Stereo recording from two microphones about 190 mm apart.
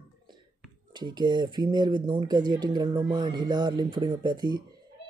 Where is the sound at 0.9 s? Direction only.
25° right (ahead or behind).